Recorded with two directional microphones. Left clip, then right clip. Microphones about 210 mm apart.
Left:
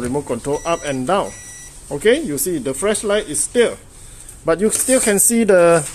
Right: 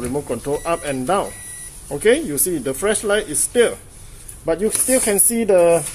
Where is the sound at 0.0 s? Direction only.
15° left (ahead or behind).